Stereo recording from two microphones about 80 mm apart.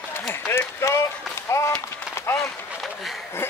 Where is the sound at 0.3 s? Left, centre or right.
Left.